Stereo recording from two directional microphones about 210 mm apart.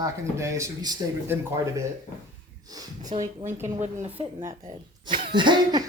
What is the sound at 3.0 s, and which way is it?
Speech, 35° right (ahead or behind).